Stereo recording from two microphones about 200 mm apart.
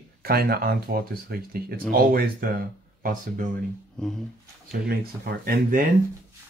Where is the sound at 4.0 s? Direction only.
5° left (ahead or behind).